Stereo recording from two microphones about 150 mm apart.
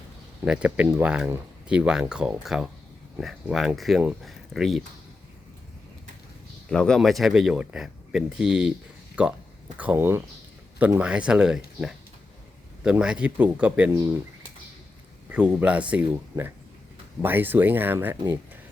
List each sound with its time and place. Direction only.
0.4 s speech: 5° right (ahead or behind)
6.7 s speech: 5° left (ahead or behind)
13.9 s speech: 20° right (ahead or behind)
15.3 s speech: 10° right (ahead or behind)
16.3 s speech: 25° right (ahead or behind)
17.2 s speech: 15° right (ahead or behind)